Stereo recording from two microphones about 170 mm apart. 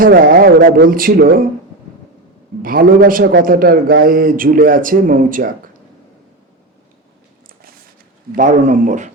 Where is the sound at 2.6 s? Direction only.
55° right (ahead or behind).